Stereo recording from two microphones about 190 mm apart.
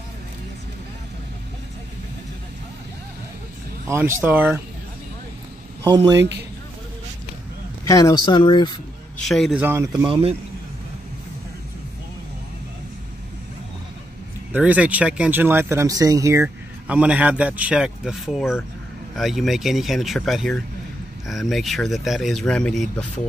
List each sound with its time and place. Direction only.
3.8 s speech: 15° right (ahead or behind)
5.9 s speech: 20° right (ahead or behind)
7.8 s speech: 20° left (ahead or behind)
9.2 s speech: centre (ahead or behind)
10.0 s speech: 25° right (ahead or behind)
14.5 s speech: 5° right (ahead or behind)